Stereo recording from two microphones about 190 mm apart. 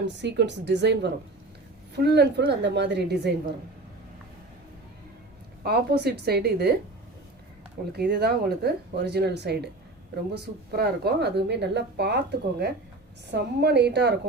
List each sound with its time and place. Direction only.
0.0 s a woman's voice: 65° right (ahead or behind)
5.6 s a woman's voice: 55° right (ahead or behind)
7.9 s a woman's voice: 60° right (ahead or behind)